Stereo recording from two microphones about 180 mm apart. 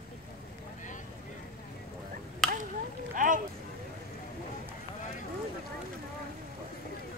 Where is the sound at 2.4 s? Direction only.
Centre (ahead or behind).